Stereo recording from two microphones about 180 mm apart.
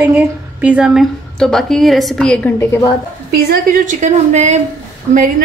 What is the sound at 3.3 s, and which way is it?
A woman's voice, 55° right (ahead or behind).